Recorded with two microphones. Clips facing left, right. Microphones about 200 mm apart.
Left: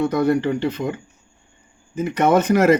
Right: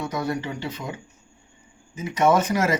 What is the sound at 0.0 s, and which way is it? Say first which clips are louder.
Speech: left 9 dB; 60° left (ahead or behind).